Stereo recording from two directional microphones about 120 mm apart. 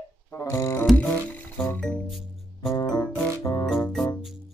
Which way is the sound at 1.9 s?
Centre (ahead or behind).